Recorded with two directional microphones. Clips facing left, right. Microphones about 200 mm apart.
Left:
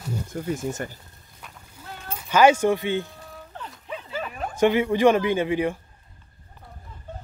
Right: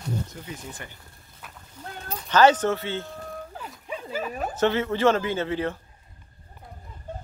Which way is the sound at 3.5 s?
5° right (ahead or behind).